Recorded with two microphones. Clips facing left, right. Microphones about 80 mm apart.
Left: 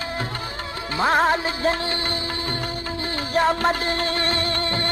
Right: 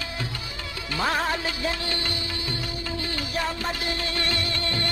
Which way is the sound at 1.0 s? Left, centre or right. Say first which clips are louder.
Left 7 dB; left.